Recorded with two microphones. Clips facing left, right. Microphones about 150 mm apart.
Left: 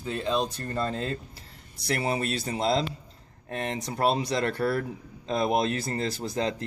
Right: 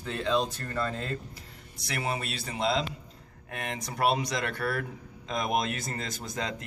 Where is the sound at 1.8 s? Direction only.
40° left (ahead or behind).